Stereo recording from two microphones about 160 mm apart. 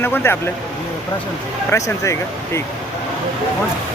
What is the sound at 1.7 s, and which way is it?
Speech, 20° left (ahead or behind).